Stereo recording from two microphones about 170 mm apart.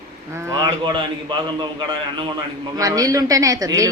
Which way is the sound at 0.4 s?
25° right (ahead or behind).